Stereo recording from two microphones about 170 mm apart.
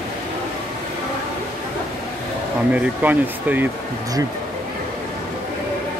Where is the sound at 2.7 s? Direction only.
10° right (ahead or behind).